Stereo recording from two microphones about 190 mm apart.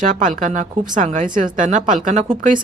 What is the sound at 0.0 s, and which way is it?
Speech, 45° right (ahead or behind).